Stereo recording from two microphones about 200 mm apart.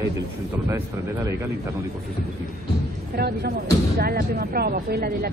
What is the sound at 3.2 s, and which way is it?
Speech, 55° right (ahead or behind).